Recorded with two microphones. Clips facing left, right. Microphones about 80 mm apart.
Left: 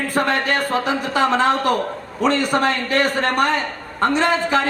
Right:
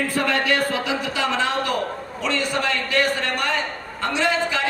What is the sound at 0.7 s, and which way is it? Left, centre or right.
A man's voice, left.